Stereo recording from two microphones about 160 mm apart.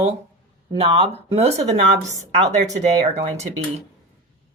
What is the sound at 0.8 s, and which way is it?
Speech, 35° right (ahead or behind).